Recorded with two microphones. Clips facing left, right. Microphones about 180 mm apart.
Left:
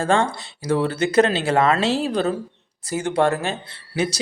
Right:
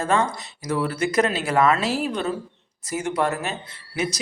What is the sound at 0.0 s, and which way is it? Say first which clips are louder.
Speech: left 2 dB; 30° left (ahead or behind).